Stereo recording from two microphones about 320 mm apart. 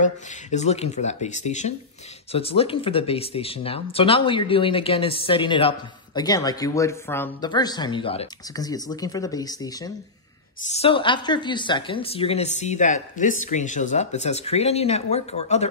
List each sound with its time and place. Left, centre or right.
0.0 s speech: left